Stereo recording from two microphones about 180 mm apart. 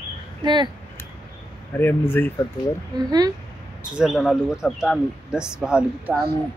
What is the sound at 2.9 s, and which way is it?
Speech, 20° right (ahead or behind).